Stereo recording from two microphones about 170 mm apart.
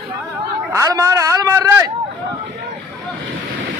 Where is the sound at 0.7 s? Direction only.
20° right (ahead or behind).